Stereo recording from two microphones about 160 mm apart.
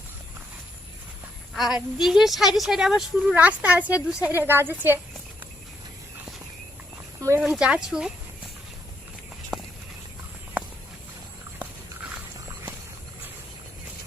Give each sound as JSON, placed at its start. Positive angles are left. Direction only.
{"t": 1.5, "sound": "a woman's voice", "side_deg": 0}
{"t": 7.2, "sound": "speech", "side_deg": -15}
{"t": 7.5, "sound": "speech", "side_deg": -5}